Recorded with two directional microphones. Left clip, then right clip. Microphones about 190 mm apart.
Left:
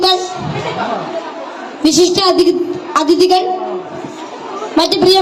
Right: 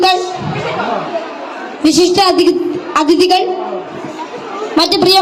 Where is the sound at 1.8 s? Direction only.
5° right (ahead or behind).